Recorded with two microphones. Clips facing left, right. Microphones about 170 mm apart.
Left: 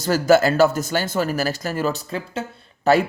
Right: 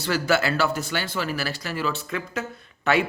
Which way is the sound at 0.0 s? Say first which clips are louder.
Left 7 dB; 40° left (ahead or behind).